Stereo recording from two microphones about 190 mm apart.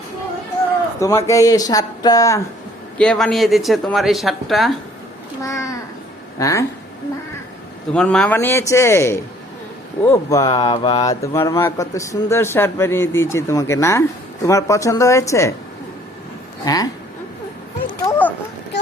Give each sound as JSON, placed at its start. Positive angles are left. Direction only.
{"t": 0.9, "sound": "speech", "side_deg": 15}
{"t": 3.0, "sound": "speech", "side_deg": 5}
{"t": 5.4, "sound": "speech", "side_deg": 15}
{"t": 7.9, "sound": "speech", "side_deg": 5}
{"t": 16.6, "sound": "speech", "side_deg": 20}
{"t": 18.0, "sound": "a sound", "side_deg": 10}